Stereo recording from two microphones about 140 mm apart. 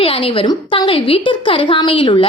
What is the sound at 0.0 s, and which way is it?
A woman's voice, 40° left (ahead or behind).